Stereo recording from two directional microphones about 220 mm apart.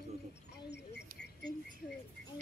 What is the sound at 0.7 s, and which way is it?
Speech, 50° left (ahead or behind).